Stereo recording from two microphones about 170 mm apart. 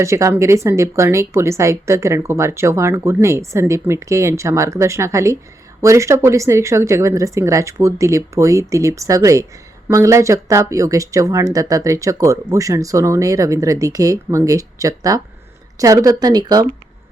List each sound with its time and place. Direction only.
0.0 s speech: 15° right (ahead or behind)